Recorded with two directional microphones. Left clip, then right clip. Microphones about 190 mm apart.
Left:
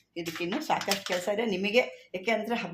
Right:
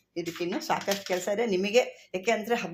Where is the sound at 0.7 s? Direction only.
20° right (ahead or behind).